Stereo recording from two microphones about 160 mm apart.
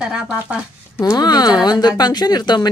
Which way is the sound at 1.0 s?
25° left (ahead or behind).